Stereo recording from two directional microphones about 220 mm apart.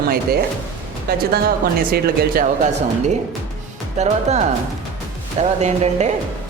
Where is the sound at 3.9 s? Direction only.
30° right (ahead or behind).